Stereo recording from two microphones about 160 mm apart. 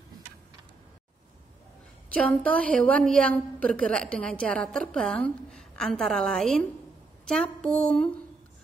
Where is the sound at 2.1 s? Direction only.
10° left (ahead or behind).